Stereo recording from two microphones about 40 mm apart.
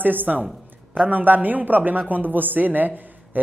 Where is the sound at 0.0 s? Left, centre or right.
Right.